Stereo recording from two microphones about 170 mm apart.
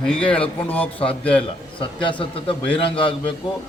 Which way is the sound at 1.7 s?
30° left (ahead or behind).